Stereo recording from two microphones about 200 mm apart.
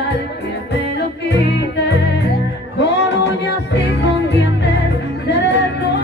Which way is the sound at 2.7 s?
55° left (ahead or behind).